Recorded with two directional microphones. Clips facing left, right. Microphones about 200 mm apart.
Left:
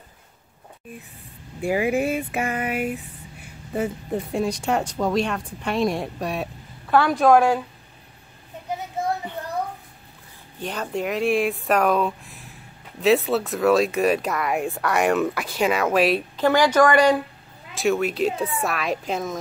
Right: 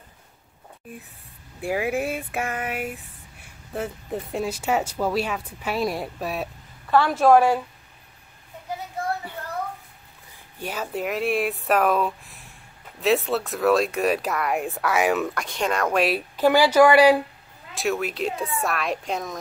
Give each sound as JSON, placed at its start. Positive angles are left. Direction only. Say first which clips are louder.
{"t": 1.6, "sound": "speech", "louder": "left 3 dB", "side_deg": 0}
{"t": 8.6, "sound": "a sound", "louder": "left 3 dB", "side_deg": 20}
{"t": 10.6, "sound": "speech", "louder": "left 2 dB", "side_deg": -5}